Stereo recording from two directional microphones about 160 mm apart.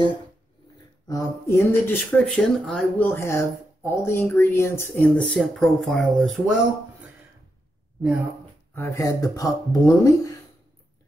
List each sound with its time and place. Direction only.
1.0 s speech: 20° left (ahead or behind)
3.1 s speech: 15° left (ahead or behind); by 6.6 s centre (ahead or behind)
8.7 s speech: 20° left (ahead or behind)